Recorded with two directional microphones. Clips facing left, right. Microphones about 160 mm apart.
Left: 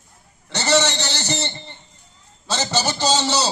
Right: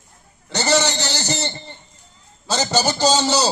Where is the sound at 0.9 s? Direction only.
40° right (ahead or behind).